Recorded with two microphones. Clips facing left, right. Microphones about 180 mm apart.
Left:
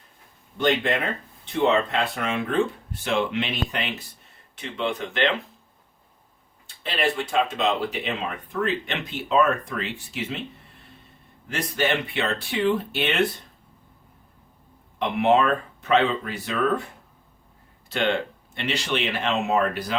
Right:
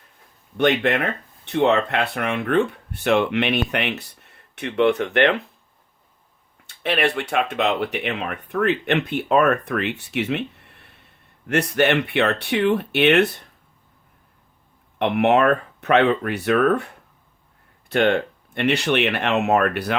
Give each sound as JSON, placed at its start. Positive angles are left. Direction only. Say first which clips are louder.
{"t": 0.5, "sound": "speech", "louder": "right 4 dB", "side_deg": -65}
{"t": 6.7, "sound": "speech", "louder": "right 4 dB", "side_deg": -65}
{"t": 14.9, "sound": "speech", "louder": "right 3 dB", "side_deg": -65}